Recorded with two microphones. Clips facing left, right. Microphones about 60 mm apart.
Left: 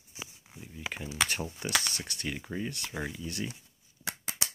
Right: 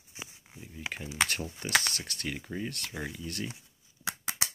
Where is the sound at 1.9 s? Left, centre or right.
Centre.